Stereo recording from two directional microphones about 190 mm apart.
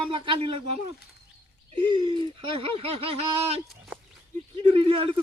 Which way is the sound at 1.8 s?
25° right (ahead or behind).